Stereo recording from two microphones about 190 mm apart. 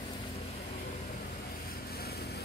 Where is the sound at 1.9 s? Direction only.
55° left (ahead or behind).